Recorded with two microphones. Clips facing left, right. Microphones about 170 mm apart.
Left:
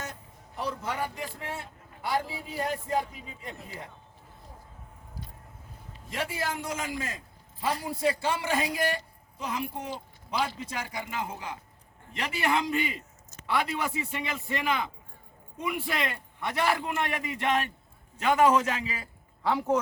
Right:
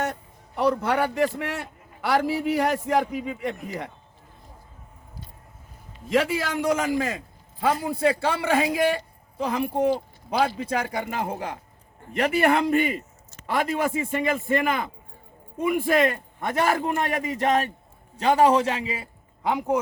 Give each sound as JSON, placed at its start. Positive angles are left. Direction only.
{"t": 0.0, "sound": "a man's voice", "side_deg": -65}
{"t": 6.1, "sound": "a man's voice", "side_deg": -90}
{"t": 7.6, "sound": "a woman's voice", "side_deg": -55}